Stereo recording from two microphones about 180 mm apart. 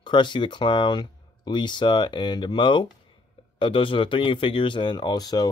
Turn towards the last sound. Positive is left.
turn(degrees=20)  # may be behind; listen again after turning